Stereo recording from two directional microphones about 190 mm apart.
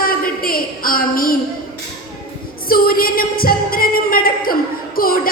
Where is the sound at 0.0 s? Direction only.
50° left (ahead or behind).